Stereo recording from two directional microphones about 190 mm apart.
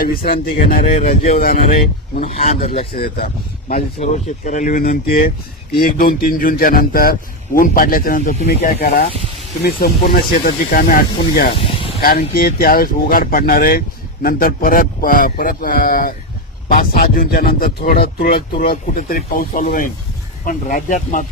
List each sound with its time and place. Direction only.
0.3 s speech: 50° left (ahead or behind)
2.2 s speech: 35° left (ahead or behind)
2.9 s speech: 50° left (ahead or behind)
3.7 s speech: 40° left (ahead or behind)
11.5 s snake: 30° left (ahead or behind)
12.0 s speech: 50° left (ahead or behind)